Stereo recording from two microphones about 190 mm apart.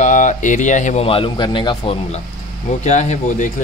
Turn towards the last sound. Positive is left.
turn(degrees=40)  # may be behind; listen again after turning